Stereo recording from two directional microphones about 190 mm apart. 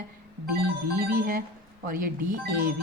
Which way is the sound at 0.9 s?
50° right (ahead or behind).